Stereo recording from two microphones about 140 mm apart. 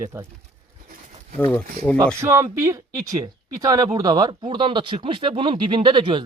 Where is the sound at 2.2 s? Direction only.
20° right (ahead or behind).